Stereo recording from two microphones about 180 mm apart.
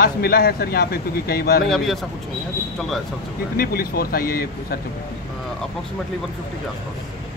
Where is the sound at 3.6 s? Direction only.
55° left (ahead or behind).